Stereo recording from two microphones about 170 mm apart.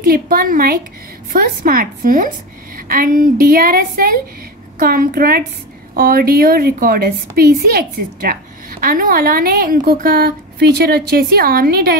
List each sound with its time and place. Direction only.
0.0 s a woman's voice: 60° right (ahead or behind)